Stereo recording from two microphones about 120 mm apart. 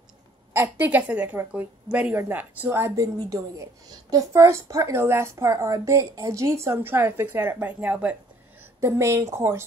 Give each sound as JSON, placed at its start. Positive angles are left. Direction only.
{"t": 0.5, "sound": "a woman's voice", "side_deg": -15}
{"t": 8.8, "sound": "a woman's voice", "side_deg": -25}